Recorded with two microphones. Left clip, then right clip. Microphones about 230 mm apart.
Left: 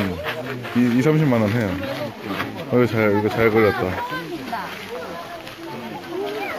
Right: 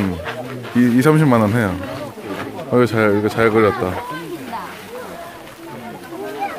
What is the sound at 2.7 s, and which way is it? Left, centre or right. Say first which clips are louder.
Speech: right 3 dB; right.